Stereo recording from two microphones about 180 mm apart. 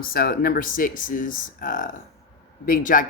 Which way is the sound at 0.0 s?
55° left (ahead or behind).